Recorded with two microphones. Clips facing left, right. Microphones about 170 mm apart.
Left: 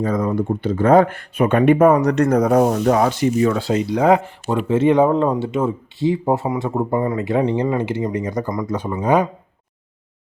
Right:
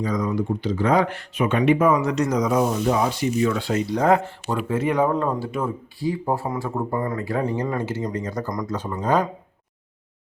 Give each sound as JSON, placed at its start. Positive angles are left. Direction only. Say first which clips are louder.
{"t": 0.0, "sound": "speech", "louder": "left 4 dB", "side_deg": 55}
{"t": 3.4, "sound": "speech", "louder": "left 2 dB", "side_deg": 35}
{"t": 3.9, "sound": "speech", "louder": "left 3 dB", "side_deg": 15}
{"t": 4.7, "sound": "speech", "louder": "left 7 dB", "side_deg": 25}
{"t": 7.7, "sound": "speech", "louder": "left 5 dB", "side_deg": 15}